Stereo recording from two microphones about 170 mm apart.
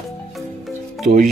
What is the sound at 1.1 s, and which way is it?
Speech, 40° right (ahead or behind).